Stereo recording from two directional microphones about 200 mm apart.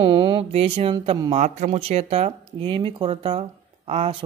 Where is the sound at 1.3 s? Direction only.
35° right (ahead or behind).